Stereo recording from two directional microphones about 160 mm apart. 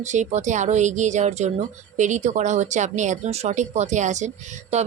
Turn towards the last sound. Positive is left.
turn(degrees=-45)  # may be behind; listen again after turning